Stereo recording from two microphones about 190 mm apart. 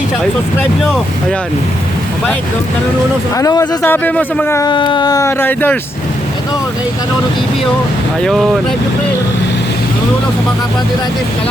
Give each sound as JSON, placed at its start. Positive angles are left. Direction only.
{"t": 0.8, "sound": "speech", "side_deg": 0}
{"t": 3.3, "sound": "speech", "side_deg": 20}
{"t": 3.8, "sound": "speech", "side_deg": 10}
{"t": 4.7, "sound": "speech", "side_deg": 25}
{"t": 8.2, "sound": "speech", "side_deg": 0}